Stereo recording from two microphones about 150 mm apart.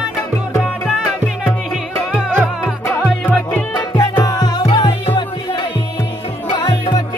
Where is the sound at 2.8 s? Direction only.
15° left (ahead or behind).